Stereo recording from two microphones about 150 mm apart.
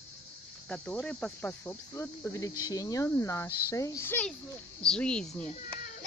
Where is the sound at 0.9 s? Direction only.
10° left (ahead or behind).